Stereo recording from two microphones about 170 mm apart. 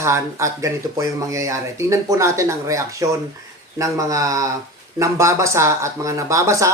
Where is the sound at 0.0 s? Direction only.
15° right (ahead or behind).